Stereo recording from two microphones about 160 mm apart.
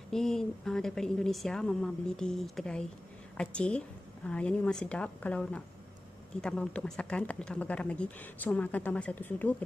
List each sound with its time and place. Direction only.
0.1 s a woman's voice: 5° left (ahead or behind)